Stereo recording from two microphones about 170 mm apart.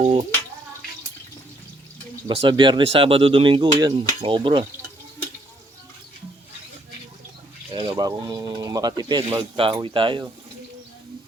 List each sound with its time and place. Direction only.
0.0 s speech: 35° right (ahead or behind)
2.2 s speech: 30° right (ahead or behind)
3.8 s sizzle: 25° right (ahead or behind)
7.7 s speech: 30° right (ahead or behind)